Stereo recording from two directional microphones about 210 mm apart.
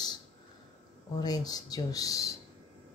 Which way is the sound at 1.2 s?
20° left (ahead or behind).